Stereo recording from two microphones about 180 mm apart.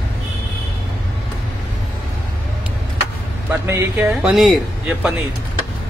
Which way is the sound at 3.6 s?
10° right (ahead or behind).